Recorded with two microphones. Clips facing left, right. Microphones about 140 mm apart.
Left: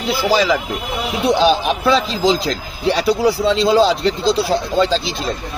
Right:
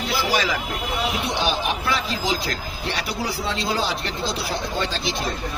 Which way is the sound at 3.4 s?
90° left.